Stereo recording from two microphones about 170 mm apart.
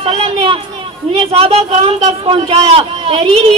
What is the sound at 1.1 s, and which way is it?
A man's voice, 35° right (ahead or behind).